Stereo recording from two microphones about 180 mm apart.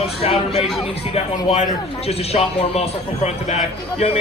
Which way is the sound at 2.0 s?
35° left (ahead or behind).